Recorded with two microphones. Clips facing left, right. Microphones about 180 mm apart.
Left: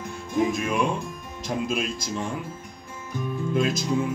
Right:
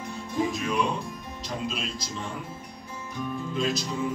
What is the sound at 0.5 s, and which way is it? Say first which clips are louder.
A man's voice: left 3 dB; 50° left (ahead or behind).